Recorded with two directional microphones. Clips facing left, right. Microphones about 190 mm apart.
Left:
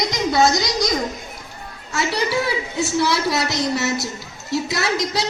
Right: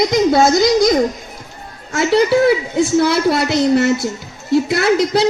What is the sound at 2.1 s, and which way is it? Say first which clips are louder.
A woman's voice: right 12 dB; 55° right (ahead or behind).